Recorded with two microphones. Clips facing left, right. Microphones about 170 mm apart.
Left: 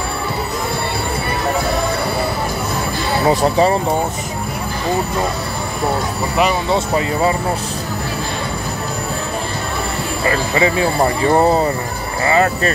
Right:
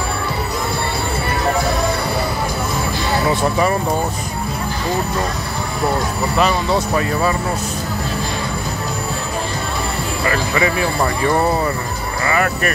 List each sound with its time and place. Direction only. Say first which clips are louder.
3.3 s speech: left 5 dB; 30° left (ahead or behind)
6.3 s speech: left 1 dB; 20° left (ahead or behind)
10.2 s speech: left 2 dB; 25° left (ahead or behind)